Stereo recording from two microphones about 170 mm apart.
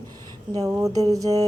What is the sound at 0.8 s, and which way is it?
Speech, 20° right (ahead or behind).